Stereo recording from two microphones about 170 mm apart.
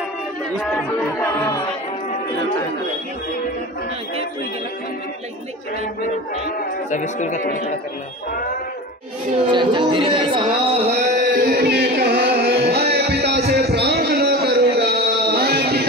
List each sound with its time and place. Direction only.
0.6 s speech: 10° left (ahead or behind)
6.9 s a man's voice: 45° left (ahead or behind)
9.5 s speech: 30° right (ahead or behind)
10.9 s music: 60° right (ahead or behind)